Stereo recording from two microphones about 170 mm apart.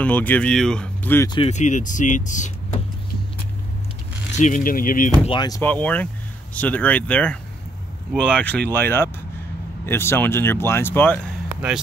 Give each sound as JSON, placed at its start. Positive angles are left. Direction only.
{"t": 0.0, "sound": "speech", "side_deg": 10}
{"t": 1.5, "sound": "speech", "side_deg": 45}
{"t": 4.4, "sound": "speech", "side_deg": 50}
{"t": 5.2, "sound": "speech", "side_deg": 25}
{"t": 5.6, "sound": "speech", "side_deg": 10}